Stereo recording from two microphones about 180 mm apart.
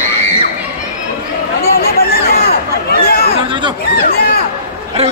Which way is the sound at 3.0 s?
55° left (ahead or behind).